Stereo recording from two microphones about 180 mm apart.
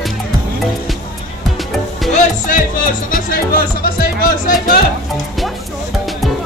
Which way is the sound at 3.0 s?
50° left (ahead or behind).